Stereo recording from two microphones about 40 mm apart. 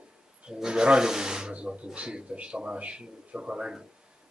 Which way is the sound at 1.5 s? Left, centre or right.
Right.